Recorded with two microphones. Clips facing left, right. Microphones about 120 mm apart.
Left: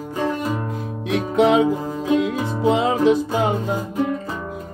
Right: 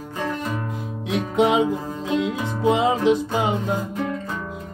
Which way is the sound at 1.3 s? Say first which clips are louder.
Left 3 dB; 15° right (ahead or behind).